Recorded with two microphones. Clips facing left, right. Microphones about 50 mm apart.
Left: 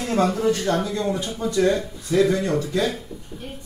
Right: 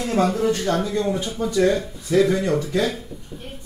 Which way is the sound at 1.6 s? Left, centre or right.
Centre.